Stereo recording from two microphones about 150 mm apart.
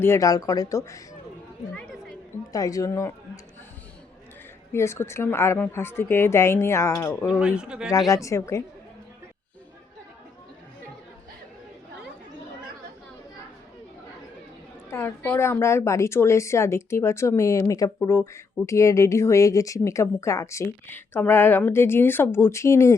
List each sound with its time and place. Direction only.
0.0 s a woman's voice: 20° left (ahead or behind)
2.5 s a woman's voice: 20° left (ahead or behind)
4.7 s a woman's voice: 15° left (ahead or behind)
7.3 s speech: 5° right (ahead or behind)
7.9 s a woman's voice: 25° left (ahead or behind)
14.8 s a woman's voice: 15° left (ahead or behind)